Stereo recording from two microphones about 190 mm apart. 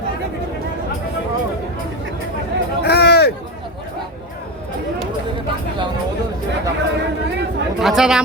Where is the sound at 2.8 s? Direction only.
55° left (ahead or behind).